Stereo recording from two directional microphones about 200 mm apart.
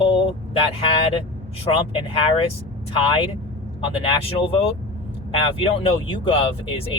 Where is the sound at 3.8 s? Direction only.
25° left (ahead or behind).